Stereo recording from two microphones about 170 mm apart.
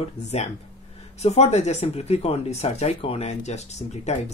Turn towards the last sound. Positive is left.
turn(degrees=40)  # may be behind; listen again after turning